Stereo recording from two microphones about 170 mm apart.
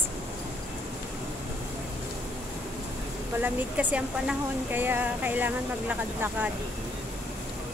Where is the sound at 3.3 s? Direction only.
10° right (ahead or behind).